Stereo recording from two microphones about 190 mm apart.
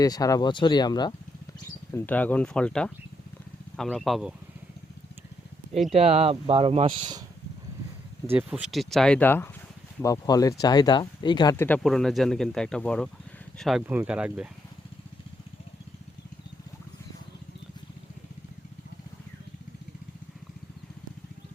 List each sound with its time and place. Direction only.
0.0 s speech: 20° left (ahead or behind)
1.9 s speech: 10° left (ahead or behind)
5.9 s speech: 35° right (ahead or behind)
8.3 s speech: 10° right (ahead or behind); by 11.5 s 25° left (ahead or behind)
11.5 s speech: 10° left (ahead or behind)
11.8 s speech: centre (ahead or behind)